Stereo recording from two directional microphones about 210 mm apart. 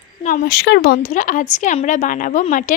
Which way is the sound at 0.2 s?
35° left (ahead or behind).